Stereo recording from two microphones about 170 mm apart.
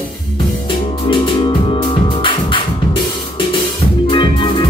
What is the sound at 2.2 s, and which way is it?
Music, 30° left (ahead or behind).